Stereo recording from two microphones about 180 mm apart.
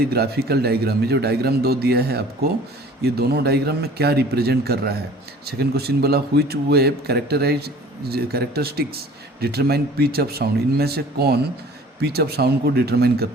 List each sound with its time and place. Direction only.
0.1 s a man's voice: 60° right (ahead or behind)